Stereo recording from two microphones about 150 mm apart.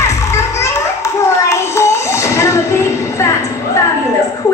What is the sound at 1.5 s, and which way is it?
Child singing, 20° left (ahead or behind).